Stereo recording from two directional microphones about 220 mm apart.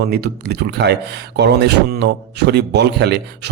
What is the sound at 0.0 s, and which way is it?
Speech, 45° right (ahead or behind).